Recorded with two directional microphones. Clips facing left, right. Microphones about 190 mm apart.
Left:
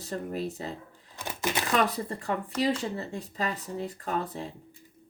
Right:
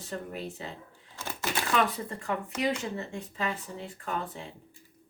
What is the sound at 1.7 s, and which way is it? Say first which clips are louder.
Speech: left 1 dB; 40° left (ahead or behind).